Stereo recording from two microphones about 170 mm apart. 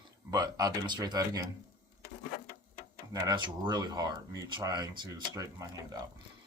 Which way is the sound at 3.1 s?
25° right (ahead or behind).